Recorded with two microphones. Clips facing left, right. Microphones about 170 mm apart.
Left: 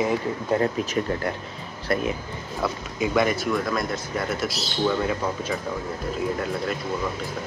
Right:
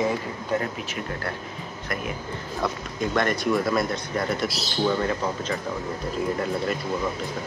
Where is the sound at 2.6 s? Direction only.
5° left (ahead or behind).